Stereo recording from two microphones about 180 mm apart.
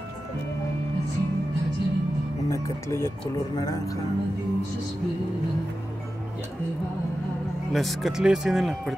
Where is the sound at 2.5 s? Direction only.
15° left (ahead or behind).